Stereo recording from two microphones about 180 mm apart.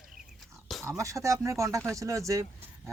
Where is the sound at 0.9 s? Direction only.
15° right (ahead or behind).